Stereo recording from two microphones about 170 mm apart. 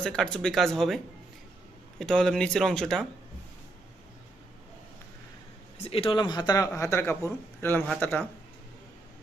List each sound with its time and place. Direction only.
0.0 s speech: 5° left (ahead or behind)
5.7 s speech: 35° left (ahead or behind); by 8.2 s 10° left (ahead or behind)